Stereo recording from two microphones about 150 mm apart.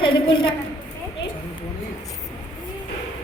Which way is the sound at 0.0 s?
30° left (ahead or behind).